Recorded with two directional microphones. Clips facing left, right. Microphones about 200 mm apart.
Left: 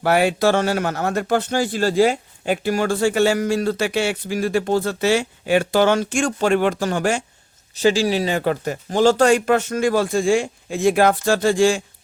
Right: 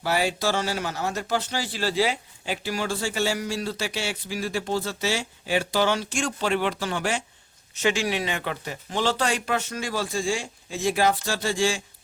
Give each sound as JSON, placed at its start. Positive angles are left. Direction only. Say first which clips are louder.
{"t": 0.0, "sound": "speech", "louder": "left 8 dB", "side_deg": 60}
{"t": 7.8, "sound": "speech", "louder": "left 7 dB", "side_deg": 35}